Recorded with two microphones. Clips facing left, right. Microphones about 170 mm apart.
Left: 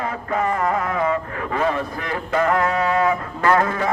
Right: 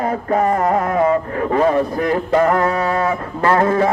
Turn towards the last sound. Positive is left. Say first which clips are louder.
# right 4 dB
turn(degrees=-30)  # may be behind; listen again after turning